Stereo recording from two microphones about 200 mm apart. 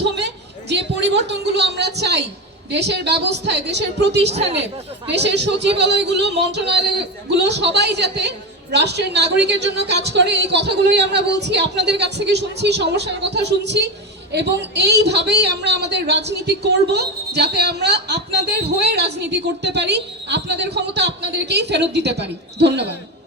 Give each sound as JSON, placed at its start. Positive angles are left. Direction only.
{"t": 0.7, "sound": "a woman's voice", "side_deg": -60}
{"t": 4.3, "sound": "a woman's voice", "side_deg": -30}
{"t": 5.1, "sound": "a man's voice", "side_deg": -60}